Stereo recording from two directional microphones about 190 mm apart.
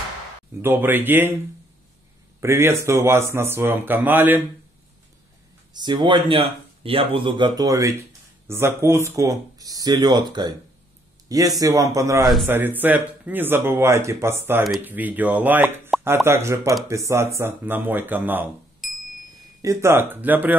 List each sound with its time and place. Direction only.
0.6 s speech: 10° right (ahead or behind)
2.4 s speech: 15° right (ahead or behind)
5.7 s speech: 25° right (ahead or behind); by 19.0 s centre (ahead or behind)
19.6 s speech: 15° right (ahead or behind)